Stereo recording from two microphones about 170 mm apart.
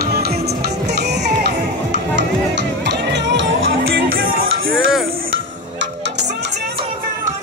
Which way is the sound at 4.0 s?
60° right (ahead or behind).